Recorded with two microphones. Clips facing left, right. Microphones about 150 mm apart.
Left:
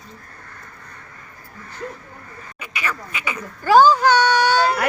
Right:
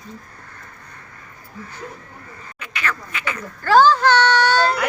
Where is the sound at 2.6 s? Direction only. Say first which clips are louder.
Right 1 dB; 10° left (ahead or behind).